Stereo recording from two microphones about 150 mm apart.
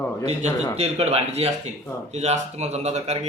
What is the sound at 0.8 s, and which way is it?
A man's voice, 45° right (ahead or behind).